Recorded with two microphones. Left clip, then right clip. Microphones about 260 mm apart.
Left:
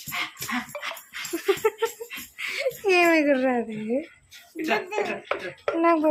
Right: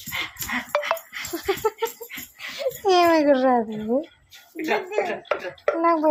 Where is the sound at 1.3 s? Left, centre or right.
Centre.